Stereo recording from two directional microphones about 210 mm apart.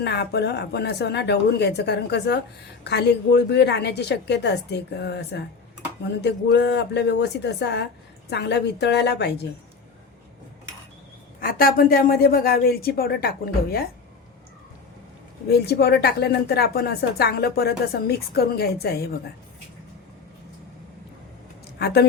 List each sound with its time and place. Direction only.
0.0 s speech: 55° left (ahead or behind)
11.3 s speech: 45° left (ahead or behind)
15.4 s speech: 50° left (ahead or behind)